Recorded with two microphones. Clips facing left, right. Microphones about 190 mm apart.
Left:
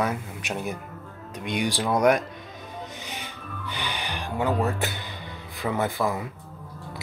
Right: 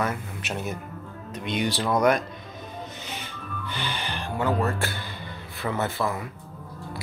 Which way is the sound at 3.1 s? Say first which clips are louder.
Right 1 dB; 15° left (ahead or behind).